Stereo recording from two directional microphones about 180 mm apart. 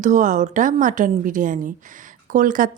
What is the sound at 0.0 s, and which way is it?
Speech, 45° right (ahead or behind).